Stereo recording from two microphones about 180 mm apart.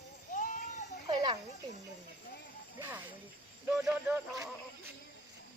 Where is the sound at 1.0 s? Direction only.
25° right (ahead or behind).